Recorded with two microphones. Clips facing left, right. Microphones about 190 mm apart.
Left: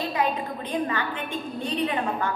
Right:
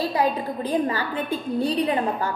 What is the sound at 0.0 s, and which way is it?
A woman's voice, 35° right (ahead or behind).